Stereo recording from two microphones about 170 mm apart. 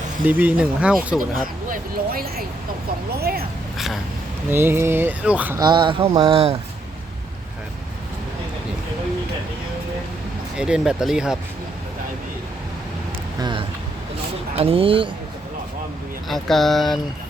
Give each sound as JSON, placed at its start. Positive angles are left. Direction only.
{"t": 0.3, "sound": "speech", "side_deg": -10}
{"t": 1.7, "sound": "speech", "side_deg": -60}
{"t": 4.4, "sound": "speech", "side_deg": -15}
{"t": 5.5, "sound": "speech", "side_deg": -25}
{"t": 10.6, "sound": "speech", "side_deg": -5}
{"t": 13.4, "sound": "speech", "side_deg": -30}
{"t": 16.3, "sound": "speech", "side_deg": 0}